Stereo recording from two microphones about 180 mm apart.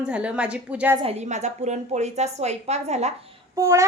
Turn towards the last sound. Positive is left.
turn(degrees=-15)  # may be behind; listen again after turning